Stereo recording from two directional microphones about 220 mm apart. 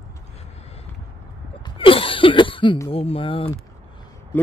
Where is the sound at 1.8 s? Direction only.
25° left (ahead or behind).